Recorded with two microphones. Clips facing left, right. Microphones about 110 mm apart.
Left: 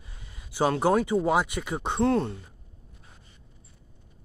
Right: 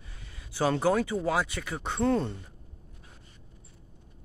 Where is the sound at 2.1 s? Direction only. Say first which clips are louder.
Left 1 dB; 5° left (ahead or behind).